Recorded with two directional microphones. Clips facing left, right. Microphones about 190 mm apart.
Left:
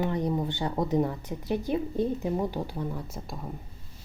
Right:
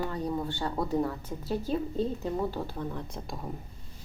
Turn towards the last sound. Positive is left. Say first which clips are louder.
# even
turn(degrees=5)  # may be behind; listen again after turning